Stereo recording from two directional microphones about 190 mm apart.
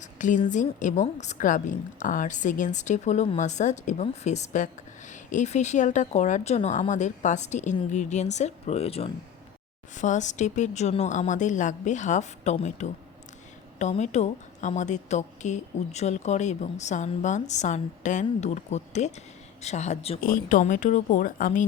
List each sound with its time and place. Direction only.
0.0 s a woman's voice: 40° left (ahead or behind)
20.2 s speech: 45° left (ahead or behind)